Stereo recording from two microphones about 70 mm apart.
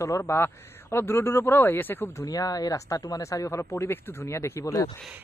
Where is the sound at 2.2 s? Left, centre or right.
Left.